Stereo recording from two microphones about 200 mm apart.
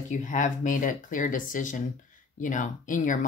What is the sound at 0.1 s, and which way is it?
Speech, 40° left (ahead or behind).